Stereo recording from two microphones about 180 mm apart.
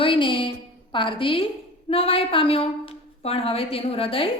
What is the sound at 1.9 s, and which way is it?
A woman's voice, 30° left (ahead or behind).